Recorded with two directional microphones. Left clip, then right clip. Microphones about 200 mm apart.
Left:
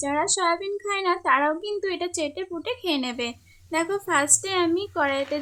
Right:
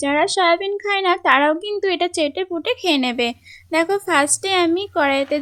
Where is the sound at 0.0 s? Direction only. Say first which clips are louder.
Right 7 dB; 30° right (ahead or behind).